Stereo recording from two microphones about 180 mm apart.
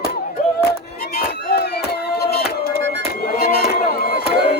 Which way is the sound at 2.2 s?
60° left (ahead or behind).